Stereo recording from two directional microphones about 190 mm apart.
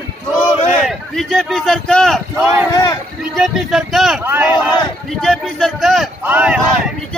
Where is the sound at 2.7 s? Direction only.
20° left (ahead or behind).